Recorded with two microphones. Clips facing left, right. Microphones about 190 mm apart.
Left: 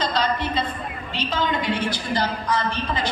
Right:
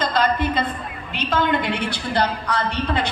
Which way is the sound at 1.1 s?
55° right (ahead or behind).